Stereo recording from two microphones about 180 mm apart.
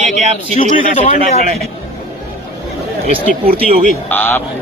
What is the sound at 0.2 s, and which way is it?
Speech, 35° right (ahead or behind).